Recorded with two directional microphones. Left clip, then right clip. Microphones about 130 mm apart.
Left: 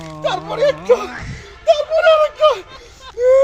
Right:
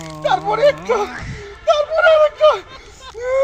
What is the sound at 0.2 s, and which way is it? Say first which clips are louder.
Speech: right 3 dB; 50° left (ahead or behind).